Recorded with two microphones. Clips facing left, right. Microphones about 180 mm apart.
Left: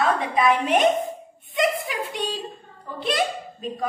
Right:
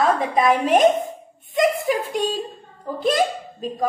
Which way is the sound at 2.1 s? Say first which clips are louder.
Right 6 dB; 45° right (ahead or behind).